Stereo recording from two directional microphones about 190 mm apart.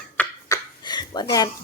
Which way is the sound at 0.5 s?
25° left (ahead or behind).